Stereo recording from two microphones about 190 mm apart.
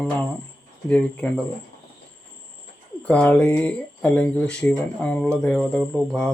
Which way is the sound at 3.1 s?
5° left (ahead or behind).